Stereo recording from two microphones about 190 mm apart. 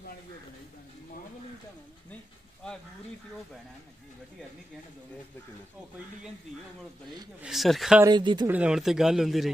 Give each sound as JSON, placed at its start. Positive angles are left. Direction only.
{"t": 7.4, "sound": "speech", "side_deg": 0}
{"t": 8.0, "sound": "speech", "side_deg": -25}
{"t": 8.5, "sound": "speech", "side_deg": -5}